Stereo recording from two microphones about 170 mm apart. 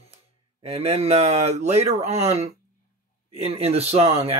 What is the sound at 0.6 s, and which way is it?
Speech, 35° right (ahead or behind).